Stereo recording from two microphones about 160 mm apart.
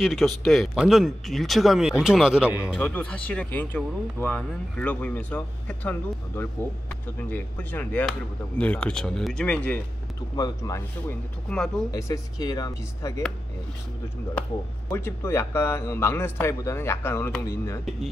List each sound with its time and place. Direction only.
0.0 s speech: centre (ahead or behind)
2.8 s speech: 10° left (ahead or behind)
10.3 s speech: 20° left (ahead or behind)
11.4 s speech: 5° left (ahead or behind)
11.9 s speech: 20° left (ahead or behind)
14.9 s speech: 15° left (ahead or behind)